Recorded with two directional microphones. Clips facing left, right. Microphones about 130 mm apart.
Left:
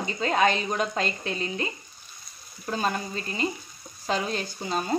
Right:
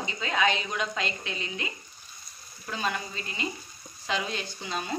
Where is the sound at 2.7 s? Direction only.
40° left (ahead or behind).